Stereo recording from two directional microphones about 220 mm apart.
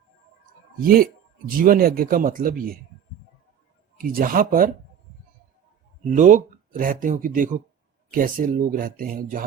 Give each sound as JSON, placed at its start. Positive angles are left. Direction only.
{"t": 1.6, "sound": "speech", "side_deg": -40}
{"t": 3.9, "sound": "speech", "side_deg": -40}
{"t": 6.1, "sound": "speech", "side_deg": -35}